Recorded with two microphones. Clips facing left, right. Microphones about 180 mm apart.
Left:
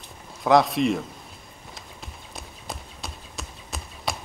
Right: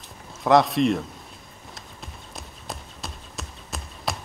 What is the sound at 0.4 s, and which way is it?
Speech, centre (ahead or behind).